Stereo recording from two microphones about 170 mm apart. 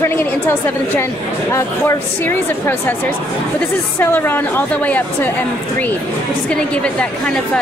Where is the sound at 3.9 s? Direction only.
10° left (ahead or behind).